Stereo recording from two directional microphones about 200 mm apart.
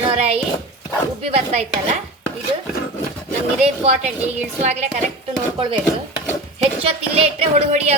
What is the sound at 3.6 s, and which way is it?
Speech, 35° right (ahead or behind).